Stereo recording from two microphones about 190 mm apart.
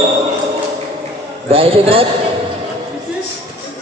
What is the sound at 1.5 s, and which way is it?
Speech, 30° right (ahead or behind).